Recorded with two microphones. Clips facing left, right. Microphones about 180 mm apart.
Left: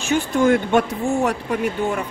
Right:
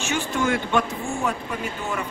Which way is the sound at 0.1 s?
45° left (ahead or behind).